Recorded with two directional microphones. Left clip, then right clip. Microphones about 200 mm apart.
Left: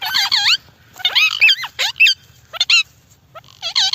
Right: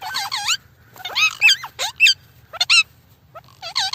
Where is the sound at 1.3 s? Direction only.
15° right (ahead or behind).